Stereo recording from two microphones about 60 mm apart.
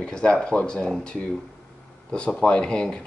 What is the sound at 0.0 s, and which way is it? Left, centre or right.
Speech, centre.